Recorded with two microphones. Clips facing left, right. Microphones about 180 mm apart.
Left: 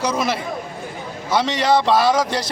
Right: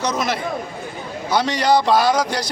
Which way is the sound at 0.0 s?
10° left (ahead or behind).